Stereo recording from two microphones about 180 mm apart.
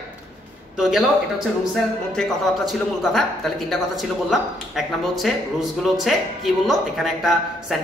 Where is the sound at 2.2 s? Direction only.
Centre (ahead or behind).